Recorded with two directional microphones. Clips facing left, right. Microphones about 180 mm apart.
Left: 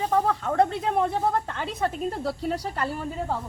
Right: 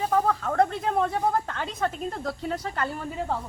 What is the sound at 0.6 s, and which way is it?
Speech, 20° left (ahead or behind).